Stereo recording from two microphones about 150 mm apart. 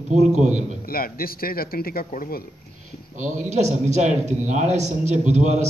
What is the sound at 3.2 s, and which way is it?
A man's voice, 55° right (ahead or behind).